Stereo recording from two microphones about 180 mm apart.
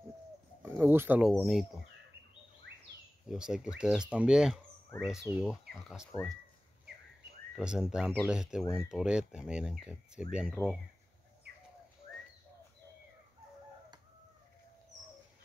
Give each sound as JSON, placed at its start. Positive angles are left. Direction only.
{"t": 0.6, "sound": "speech", "side_deg": -10}
{"t": 3.3, "sound": "speech", "side_deg": -5}
{"t": 7.5, "sound": "speech", "side_deg": -5}